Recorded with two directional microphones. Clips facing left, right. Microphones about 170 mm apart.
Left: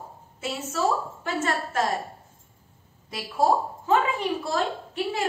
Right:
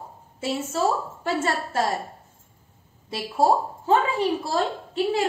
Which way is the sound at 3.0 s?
30° right (ahead or behind).